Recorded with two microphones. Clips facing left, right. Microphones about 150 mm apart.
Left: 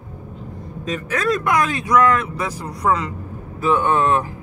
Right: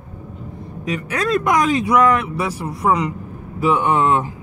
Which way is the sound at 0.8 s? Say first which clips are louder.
Even; 15° right (ahead or behind).